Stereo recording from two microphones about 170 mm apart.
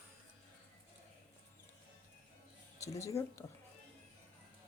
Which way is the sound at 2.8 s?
20° left (ahead or behind).